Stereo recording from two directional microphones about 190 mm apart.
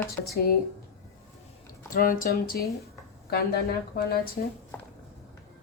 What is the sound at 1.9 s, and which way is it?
A woman's voice, 45° left (ahead or behind).